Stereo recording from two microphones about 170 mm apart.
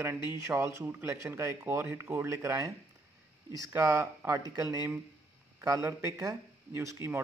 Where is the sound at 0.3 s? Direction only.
15° right (ahead or behind).